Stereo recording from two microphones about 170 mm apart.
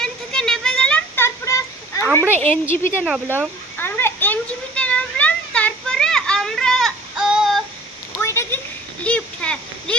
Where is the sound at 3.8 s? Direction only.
15° left (ahead or behind).